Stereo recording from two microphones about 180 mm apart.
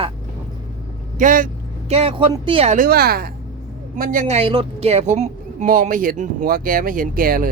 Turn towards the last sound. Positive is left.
turn(degrees=-55)  # may be behind; listen again after turning